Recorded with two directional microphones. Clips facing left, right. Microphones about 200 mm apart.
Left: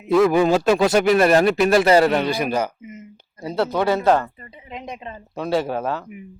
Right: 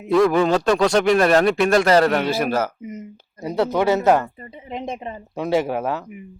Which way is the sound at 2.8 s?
40° right (ahead or behind).